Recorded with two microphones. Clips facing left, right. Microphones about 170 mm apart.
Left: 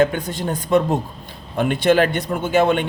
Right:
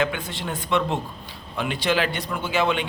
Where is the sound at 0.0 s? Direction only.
45° left (ahead or behind).